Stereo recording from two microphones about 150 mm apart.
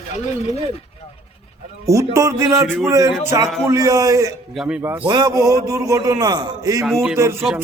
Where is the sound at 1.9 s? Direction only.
20° right (ahead or behind).